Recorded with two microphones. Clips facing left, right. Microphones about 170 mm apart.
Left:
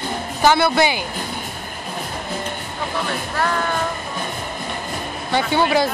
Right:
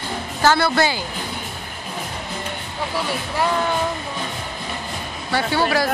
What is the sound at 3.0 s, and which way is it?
Speech, 10° right (ahead or behind).